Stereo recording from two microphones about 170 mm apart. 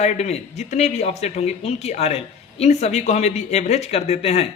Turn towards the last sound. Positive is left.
turn(degrees=35)  # may be behind; listen again after turning